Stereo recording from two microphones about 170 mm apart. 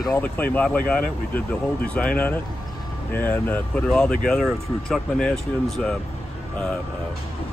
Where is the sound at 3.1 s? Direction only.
10° left (ahead or behind).